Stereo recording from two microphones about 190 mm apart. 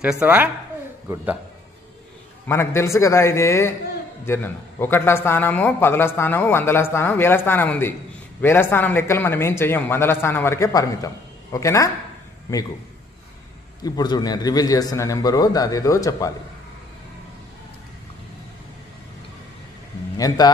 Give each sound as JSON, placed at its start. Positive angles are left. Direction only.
{"t": 0.0, "sound": "speech", "side_deg": -5}
{"t": 2.4, "sound": "a man's voice", "side_deg": 15}
{"t": 13.8, "sound": "a man's voice", "side_deg": 20}
{"t": 20.2, "sound": "a man's voice", "side_deg": 20}